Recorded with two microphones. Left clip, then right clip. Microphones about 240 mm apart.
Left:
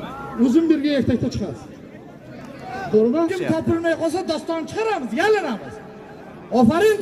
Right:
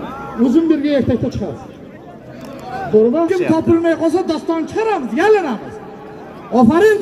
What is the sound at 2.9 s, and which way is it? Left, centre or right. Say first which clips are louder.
A man's voice: right 5 dB; left.